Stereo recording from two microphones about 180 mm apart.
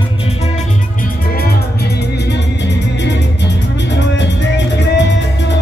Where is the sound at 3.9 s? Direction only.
75° left (ahead or behind).